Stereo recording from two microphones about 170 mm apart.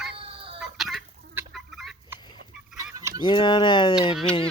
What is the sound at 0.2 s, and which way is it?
Chicken, 35° right (ahead or behind).